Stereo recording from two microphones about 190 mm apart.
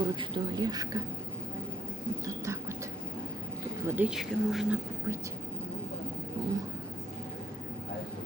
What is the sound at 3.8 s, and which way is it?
Speech, 10° right (ahead or behind).